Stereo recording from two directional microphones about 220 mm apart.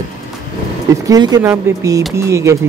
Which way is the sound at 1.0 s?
15° right (ahead or behind).